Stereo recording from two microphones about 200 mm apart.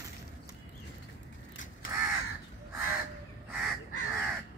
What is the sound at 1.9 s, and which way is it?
Crow, 15° right (ahead or behind).